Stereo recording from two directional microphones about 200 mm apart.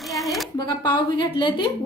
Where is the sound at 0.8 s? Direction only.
20° left (ahead or behind).